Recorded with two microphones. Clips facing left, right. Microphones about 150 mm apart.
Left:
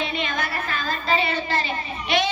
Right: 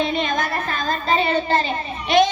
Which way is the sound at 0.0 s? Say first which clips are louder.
Right 5 dB; 40° right (ahead or behind).